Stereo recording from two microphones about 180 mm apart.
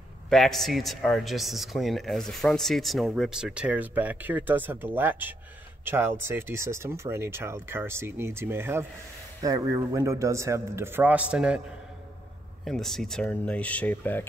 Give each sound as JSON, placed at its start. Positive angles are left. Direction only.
{"t": 0.3, "sound": "a man's voice", "side_deg": 0}
{"t": 12.6, "sound": "speech", "side_deg": 0}